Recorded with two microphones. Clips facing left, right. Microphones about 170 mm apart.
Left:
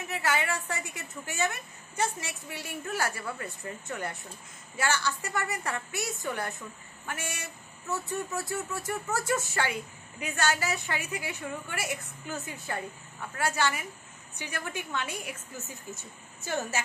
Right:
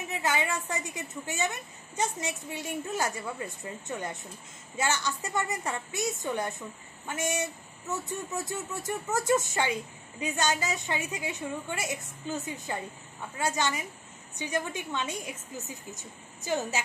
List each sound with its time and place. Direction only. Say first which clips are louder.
0.1 s a woman's voice: even; 15° right (ahead or behind)
16.4 s a woman's voice: right 2 dB; 15° right (ahead or behind)